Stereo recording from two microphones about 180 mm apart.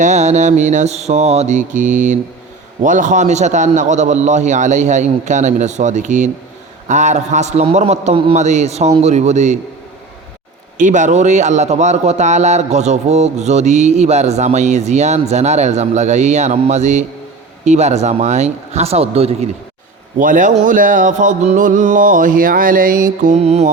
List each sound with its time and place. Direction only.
0.0 s a man's voice: 40° right (ahead or behind)
10.8 s a man's voice: 45° right (ahead or behind)
20.1 s music: 45° right (ahead or behind)